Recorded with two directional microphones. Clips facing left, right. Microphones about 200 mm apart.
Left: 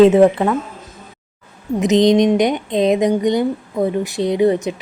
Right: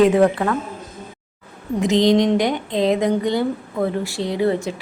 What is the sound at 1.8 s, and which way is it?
Speech, 20° left (ahead or behind).